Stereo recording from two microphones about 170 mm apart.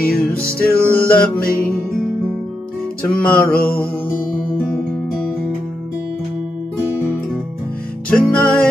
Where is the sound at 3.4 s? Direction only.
60° left (ahead or behind).